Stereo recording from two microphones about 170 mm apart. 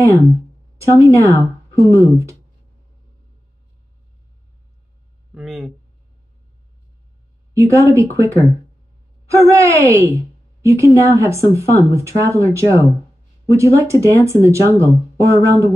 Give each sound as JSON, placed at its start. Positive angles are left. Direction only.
{"t": 0.8, "sound": "speech", "side_deg": -20}
{"t": 5.3, "sound": "speech", "side_deg": 0}
{"t": 7.5, "sound": "speech", "side_deg": -20}
{"t": 9.3, "sound": "speech", "side_deg": -15}